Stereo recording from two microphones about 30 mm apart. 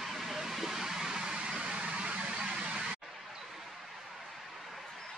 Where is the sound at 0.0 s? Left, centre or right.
Centre; by 2.8 s right.